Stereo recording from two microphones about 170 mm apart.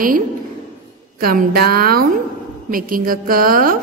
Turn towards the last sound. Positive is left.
turn(degrees=-55)  # may be behind; listen again after turning